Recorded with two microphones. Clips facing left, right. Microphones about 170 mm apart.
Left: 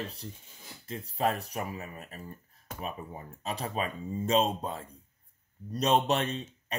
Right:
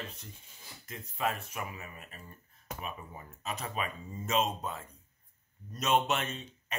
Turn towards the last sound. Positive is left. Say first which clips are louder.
# left 5 dB
turn(degrees=35)  # may be behind; listen again after turning